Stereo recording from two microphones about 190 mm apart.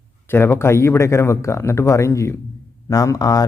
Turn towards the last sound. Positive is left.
turn(degrees=20)  # may be behind; listen again after turning